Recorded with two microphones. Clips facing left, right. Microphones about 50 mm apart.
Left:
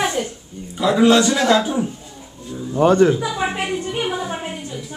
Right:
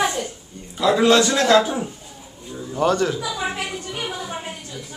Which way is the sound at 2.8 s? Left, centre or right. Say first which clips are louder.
Left 6 dB; left.